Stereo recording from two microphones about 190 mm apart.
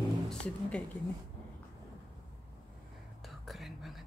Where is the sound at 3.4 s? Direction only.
Centre (ahead or behind).